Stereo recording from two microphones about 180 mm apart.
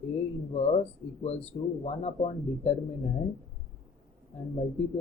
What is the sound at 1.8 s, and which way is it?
Speech, 35° left (ahead or behind).